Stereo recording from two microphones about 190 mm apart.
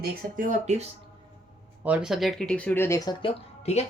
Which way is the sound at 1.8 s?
5° right (ahead or behind).